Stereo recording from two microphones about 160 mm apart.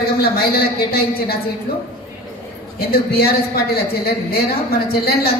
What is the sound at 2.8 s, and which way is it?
A man's voice, 70° left (ahead or behind).